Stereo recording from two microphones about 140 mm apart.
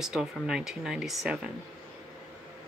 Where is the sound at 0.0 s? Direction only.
5° right (ahead or behind).